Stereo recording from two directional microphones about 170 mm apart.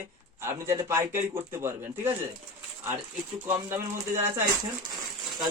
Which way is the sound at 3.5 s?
15° right (ahead or behind).